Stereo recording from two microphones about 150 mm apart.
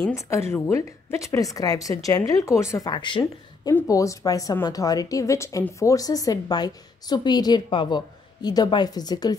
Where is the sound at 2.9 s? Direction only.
30° left (ahead or behind).